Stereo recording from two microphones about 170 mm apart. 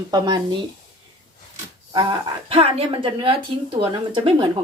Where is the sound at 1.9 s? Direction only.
25° right (ahead or behind).